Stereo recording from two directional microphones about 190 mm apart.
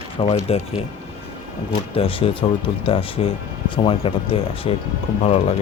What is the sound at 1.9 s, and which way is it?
Speech, 30° left (ahead or behind).